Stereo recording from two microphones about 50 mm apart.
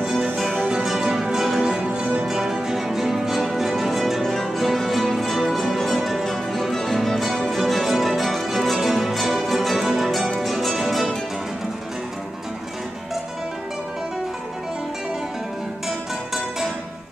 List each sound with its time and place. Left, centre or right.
0.8 s music: centre
1.9 s music: right
2.2 s music: centre
16.3 s music: centre